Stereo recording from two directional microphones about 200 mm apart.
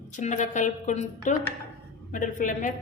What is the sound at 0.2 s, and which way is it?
A woman's voice, 35° left (ahead or behind).